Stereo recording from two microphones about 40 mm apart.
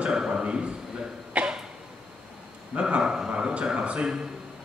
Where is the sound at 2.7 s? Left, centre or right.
Right.